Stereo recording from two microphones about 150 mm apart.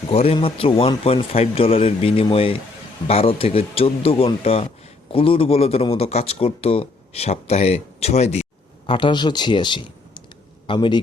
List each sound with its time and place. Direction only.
0.1 s speech: 40° left (ahead or behind)
8.9 s speech: 30° left (ahead or behind)